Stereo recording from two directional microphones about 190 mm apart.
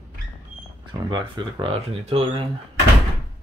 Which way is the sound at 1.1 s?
25° right (ahead or behind).